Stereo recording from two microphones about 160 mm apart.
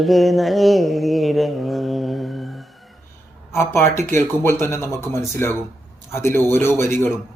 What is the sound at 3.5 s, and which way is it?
Speech, 15° left (ahead or behind).